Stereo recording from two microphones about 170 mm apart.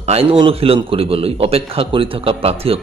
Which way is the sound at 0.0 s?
35° right (ahead or behind).